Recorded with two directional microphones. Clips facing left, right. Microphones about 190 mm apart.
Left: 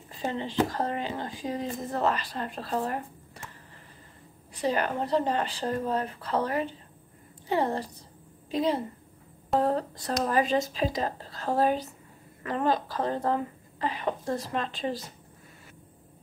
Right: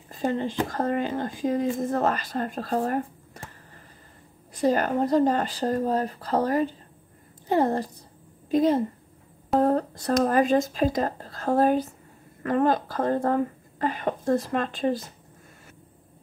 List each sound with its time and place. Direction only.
0.1 s speech: 45° right (ahead or behind)
4.6 s speech: 45° right (ahead or behind)